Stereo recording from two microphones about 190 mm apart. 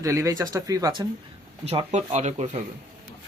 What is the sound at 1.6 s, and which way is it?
Speech, 35° right (ahead or behind).